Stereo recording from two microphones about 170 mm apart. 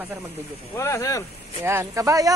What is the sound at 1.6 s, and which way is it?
Speech, 15° right (ahead or behind).